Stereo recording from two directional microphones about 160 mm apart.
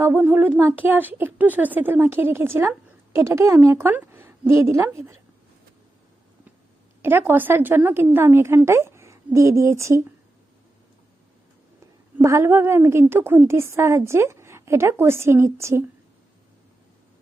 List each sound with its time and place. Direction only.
0.0 s a woman's voice: 10° right (ahead or behind)
7.0 s a woman's voice: 15° right (ahead or behind)
12.1 s a woman's voice: 15° right (ahead or behind)